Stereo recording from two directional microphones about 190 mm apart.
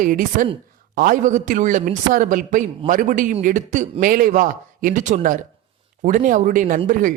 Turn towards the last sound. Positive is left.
turn(degrees=-45)  # may be behind; listen again after turning